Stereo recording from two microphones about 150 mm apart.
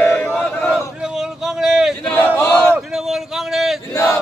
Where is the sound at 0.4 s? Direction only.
10° left (ahead or behind).